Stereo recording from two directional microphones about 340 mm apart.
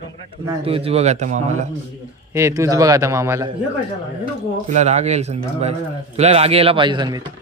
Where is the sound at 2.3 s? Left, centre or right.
Centre.